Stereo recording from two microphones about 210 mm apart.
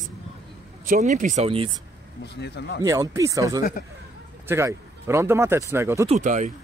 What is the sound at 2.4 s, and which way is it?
Speech, 55° left (ahead or behind).